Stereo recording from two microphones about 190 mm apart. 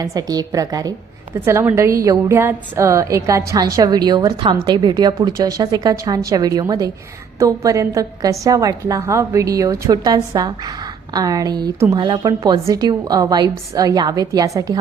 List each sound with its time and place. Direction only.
0.0 s a woman's voice: 20° right (ahead or behind)